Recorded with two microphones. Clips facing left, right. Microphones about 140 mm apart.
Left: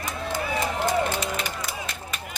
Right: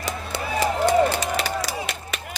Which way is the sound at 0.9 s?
90° right.